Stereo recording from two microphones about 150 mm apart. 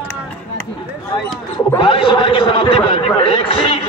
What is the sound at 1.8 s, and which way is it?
A man's voice, 35° left (ahead or behind).